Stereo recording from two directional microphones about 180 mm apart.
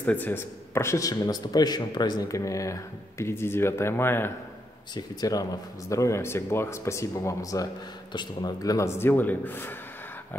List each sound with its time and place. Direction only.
0.0 s a man's voice: 10° left (ahead or behind)